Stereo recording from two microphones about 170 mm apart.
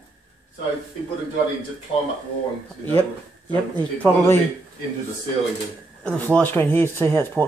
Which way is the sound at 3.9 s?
10° left (ahead or behind).